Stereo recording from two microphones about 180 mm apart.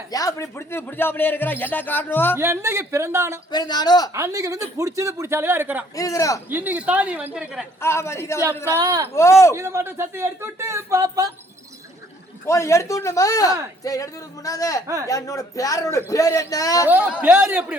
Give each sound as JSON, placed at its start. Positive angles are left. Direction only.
{"t": 0.1, "sound": "speech", "side_deg": 20}
{"t": 2.3, "sound": "speech", "side_deg": -15}
{"t": 3.5, "sound": "a man's voice", "side_deg": 20}
{"t": 4.1, "sound": "speech", "side_deg": -15}
{"t": 6.0, "sound": "a man's voice", "side_deg": 20}
{"t": 6.5, "sound": "speech", "side_deg": -10}
{"t": 7.8, "sound": "speech", "side_deg": 15}
{"t": 8.8, "sound": "speech", "side_deg": -20}
{"t": 9.1, "sound": "speech", "side_deg": 15}
{"t": 9.6, "sound": "speech", "side_deg": -15}
{"t": 12.5, "sound": "a man's voice", "side_deg": 15}
{"t": 16.9, "sound": "speech", "side_deg": -5}